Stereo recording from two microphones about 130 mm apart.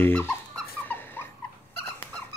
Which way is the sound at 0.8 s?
15° left (ahead or behind).